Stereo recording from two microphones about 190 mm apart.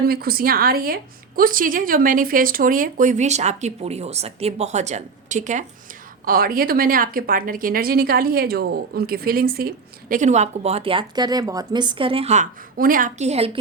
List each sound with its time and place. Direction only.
0.1 s a woman's voice: 50° right (ahead or behind); by 13.6 s 30° right (ahead or behind)